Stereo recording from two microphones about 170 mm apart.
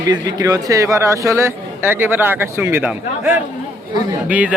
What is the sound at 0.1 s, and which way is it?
A man's voice, 20° right (ahead or behind).